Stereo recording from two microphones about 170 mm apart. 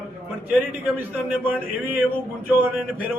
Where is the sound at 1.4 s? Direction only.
10° right (ahead or behind).